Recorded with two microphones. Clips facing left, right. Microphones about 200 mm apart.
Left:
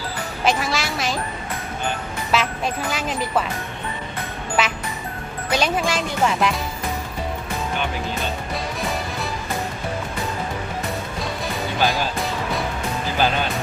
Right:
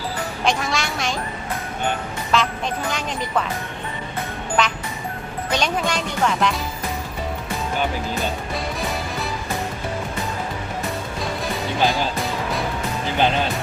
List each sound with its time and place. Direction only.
0.4 s speech: centre (ahead or behind)
2.3 s speech: 5° left (ahead or behind)
4.6 s music: 5° left (ahead or behind)
5.5 s speech: 5° left (ahead or behind)
13.1 s speech: 25° right (ahead or behind)